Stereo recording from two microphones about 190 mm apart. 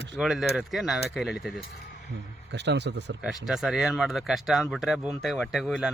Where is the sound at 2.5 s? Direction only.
65° right (ahead or behind).